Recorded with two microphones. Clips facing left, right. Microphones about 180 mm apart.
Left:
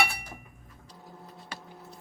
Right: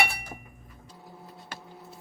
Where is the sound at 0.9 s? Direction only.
5° right (ahead or behind).